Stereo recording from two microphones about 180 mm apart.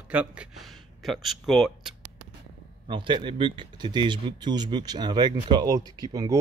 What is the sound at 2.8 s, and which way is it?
A man's voice, 25° right (ahead or behind).